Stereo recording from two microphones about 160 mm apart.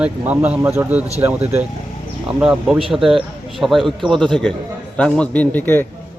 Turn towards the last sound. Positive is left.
turn(degrees=10)  # may be behind; listen again after turning